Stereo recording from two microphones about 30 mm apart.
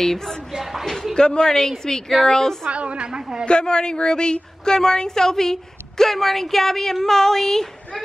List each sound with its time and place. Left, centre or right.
0.0 s speech: centre
0.5 s a sound: centre
1.1 s speech: left
2.7 s a woman's voice: right
3.0 s a woman's voice: right
3.4 s speech: left; by 8.0 s centre